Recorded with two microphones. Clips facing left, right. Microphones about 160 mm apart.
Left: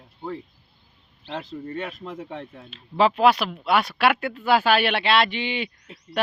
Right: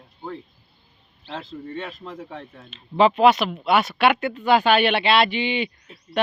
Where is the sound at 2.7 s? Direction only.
Centre (ahead or behind).